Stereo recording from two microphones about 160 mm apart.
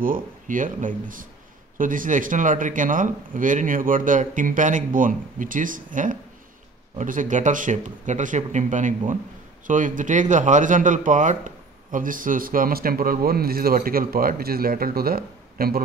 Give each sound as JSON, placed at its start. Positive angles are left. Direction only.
{"t": 0.0, "sound": "speech", "side_deg": -60}